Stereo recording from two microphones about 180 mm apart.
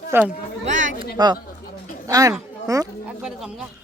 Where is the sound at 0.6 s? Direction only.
45° right (ahead or behind).